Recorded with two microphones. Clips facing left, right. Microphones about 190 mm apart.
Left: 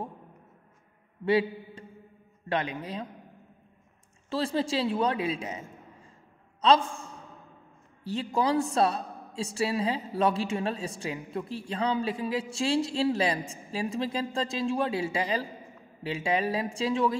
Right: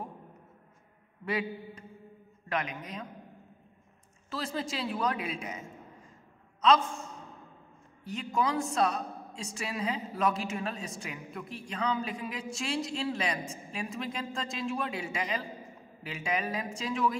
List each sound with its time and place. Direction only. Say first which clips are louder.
1.2 s a man's voice: left 8 dB; 30° left (ahead or behind)
4.3 s a woman's voice: left 7 dB; 30° left (ahead or behind)
6.6 s a woman's voice: left 2 dB; 30° left (ahead or behind)